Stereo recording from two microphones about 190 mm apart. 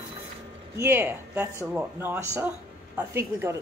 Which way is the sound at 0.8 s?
10° right (ahead or behind).